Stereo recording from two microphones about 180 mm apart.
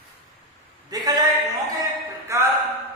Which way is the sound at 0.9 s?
20° right (ahead or behind).